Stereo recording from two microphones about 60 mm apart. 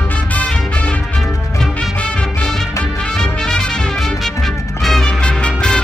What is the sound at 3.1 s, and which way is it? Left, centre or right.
Music, centre.